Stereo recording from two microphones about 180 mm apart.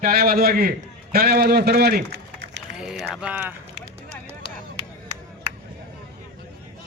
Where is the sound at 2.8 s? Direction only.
5° right (ahead or behind).